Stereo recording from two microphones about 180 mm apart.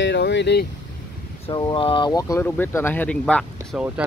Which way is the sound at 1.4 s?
25° left (ahead or behind).